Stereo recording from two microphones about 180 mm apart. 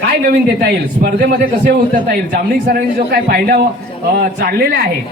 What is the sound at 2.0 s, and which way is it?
A man's voice, 60° right (ahead or behind).